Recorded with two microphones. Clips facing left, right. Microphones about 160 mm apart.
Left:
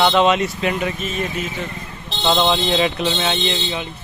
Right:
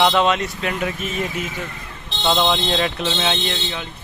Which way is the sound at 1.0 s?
15° right (ahead or behind).